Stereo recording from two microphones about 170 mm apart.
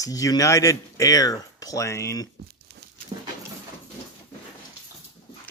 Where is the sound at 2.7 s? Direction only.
80° right.